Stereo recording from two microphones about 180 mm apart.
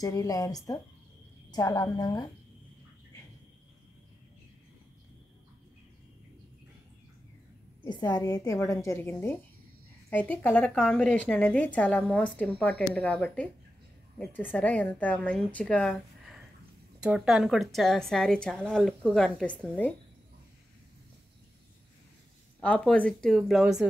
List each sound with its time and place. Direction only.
0.0 s a woman's voice: 20° left (ahead or behind)
7.8 s a woman's voice: 25° left (ahead or behind); by 19.9 s 10° left (ahead or behind)
22.6 s a woman's voice: 5° left (ahead or behind)